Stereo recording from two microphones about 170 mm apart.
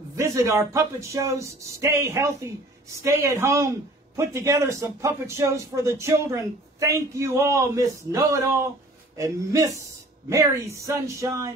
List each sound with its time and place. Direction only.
0.1 s a man's voice: 15° right (ahead or behind)